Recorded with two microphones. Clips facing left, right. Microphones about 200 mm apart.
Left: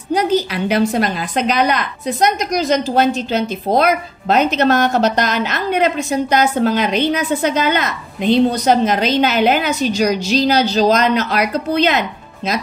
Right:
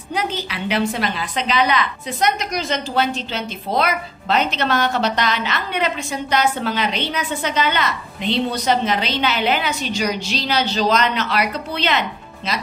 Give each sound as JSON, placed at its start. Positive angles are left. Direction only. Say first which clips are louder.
{"t": 0.1, "sound": "a woman's voice", "louder": "left 9 dB", "side_deg": 40}